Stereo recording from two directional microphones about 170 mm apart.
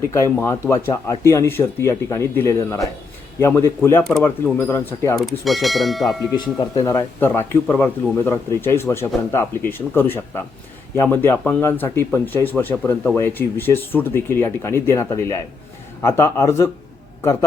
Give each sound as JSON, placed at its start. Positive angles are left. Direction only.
{"t": 0.3, "sound": "speech", "side_deg": 15}
{"t": 5.5, "sound": "speech", "side_deg": 0}
{"t": 6.3, "sound": "speech", "side_deg": 20}